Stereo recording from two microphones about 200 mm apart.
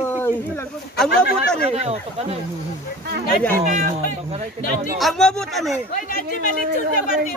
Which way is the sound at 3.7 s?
40° right (ahead or behind).